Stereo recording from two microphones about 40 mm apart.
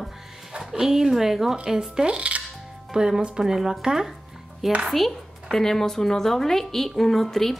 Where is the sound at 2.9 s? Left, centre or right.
Centre.